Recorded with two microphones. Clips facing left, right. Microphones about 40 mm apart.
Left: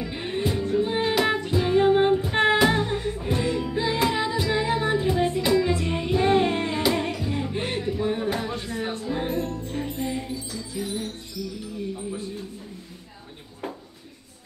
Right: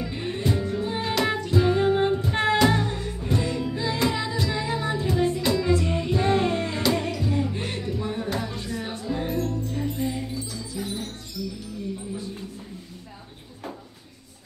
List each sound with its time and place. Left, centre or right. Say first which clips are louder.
0.1 s music: left 2 dB; left
0.5 s music: right 2 dB; centre
0.7 s music: left 3 dB; centre
9.1 s music: right 2 dB; left